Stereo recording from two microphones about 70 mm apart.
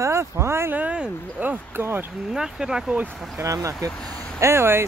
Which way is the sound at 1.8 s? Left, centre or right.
Right.